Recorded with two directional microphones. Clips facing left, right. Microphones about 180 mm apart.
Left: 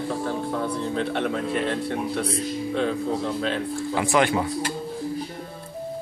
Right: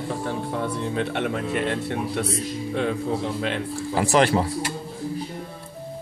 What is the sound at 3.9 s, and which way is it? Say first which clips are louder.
Speech: right 2 dB; 40° right (ahead or behind).